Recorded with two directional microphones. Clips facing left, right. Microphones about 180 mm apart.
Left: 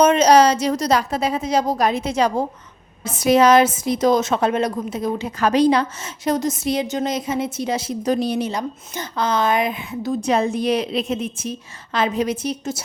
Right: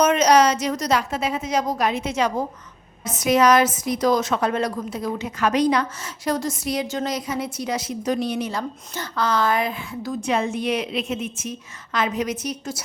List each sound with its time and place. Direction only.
0.0 s a woman's voice: 30° left (ahead or behind)
8.5 s a woman's voice: 20° left (ahead or behind)
10.2 s a woman's voice: 35° left (ahead or behind)